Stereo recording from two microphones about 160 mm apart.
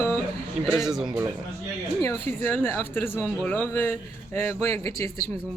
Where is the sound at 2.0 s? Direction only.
15° left (ahead or behind).